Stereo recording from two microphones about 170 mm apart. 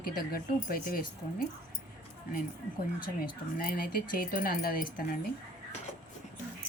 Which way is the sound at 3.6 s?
60° left (ahead or behind).